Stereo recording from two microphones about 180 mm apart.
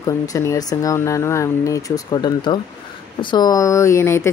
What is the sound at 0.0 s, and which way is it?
A woman's voice, 20° left (ahead or behind).